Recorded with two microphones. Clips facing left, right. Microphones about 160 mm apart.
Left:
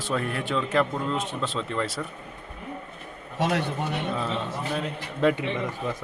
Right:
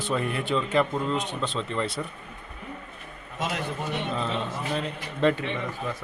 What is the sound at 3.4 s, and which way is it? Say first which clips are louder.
Speech: left 5 dB; 65° left (ahead or behind).